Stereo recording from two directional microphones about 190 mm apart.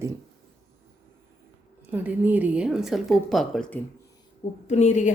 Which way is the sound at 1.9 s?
10° right (ahead or behind).